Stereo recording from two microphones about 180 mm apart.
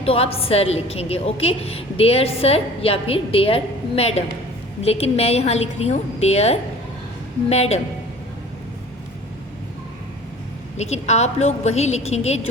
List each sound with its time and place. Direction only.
0.0 s a woman's voice: 35° left (ahead or behind)
10.8 s a woman's voice: 40° left (ahead or behind)